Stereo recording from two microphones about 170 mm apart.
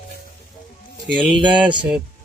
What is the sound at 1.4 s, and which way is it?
Speech, 25° right (ahead or behind).